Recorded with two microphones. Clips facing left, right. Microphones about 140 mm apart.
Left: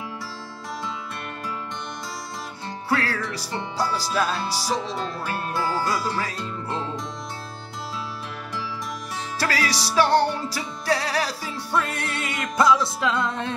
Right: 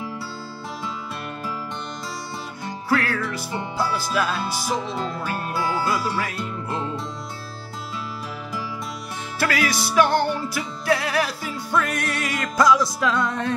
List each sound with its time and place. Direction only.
2.9 s music: 35° left (ahead or behind)
4.9 s speech: 5° right (ahead or behind)
9.4 s music: 35° left (ahead or behind)